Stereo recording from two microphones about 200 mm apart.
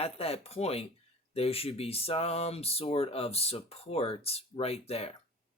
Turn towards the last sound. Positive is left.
turn(degrees=30)  # may be behind; listen again after turning